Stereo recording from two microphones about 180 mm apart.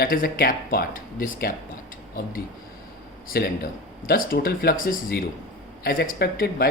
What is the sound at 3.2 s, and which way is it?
Speech, 55° left (ahead or behind).